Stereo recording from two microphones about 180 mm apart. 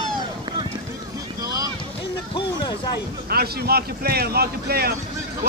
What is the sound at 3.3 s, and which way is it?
Speech, 60° right (ahead or behind).